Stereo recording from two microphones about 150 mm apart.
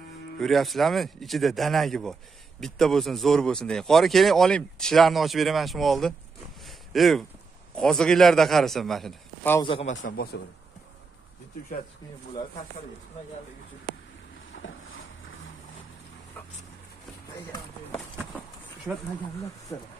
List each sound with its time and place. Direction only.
0.4 s speech: centre (ahead or behind)
6.6 s a sound: centre (ahead or behind)
7.7 s speech: 5° left (ahead or behind)
9.6 s speech: 35° left (ahead or behind)
9.8 s a man's voice: 70° left (ahead or behind)
19.7 s speech: 25° left (ahead or behind)